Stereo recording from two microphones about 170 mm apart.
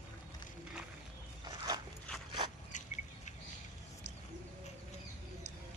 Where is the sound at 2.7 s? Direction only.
45° left (ahead or behind).